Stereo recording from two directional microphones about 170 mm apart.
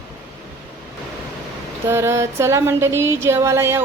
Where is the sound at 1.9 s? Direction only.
15° right (ahead or behind).